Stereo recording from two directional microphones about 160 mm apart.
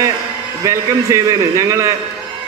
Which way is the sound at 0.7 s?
20° right (ahead or behind).